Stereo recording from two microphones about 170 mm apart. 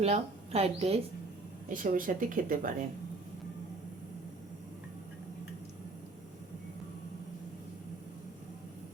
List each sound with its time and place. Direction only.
0.0 s a woman's voice: 35° right (ahead or behind)
1.7 s speech: 55° right (ahead or behind)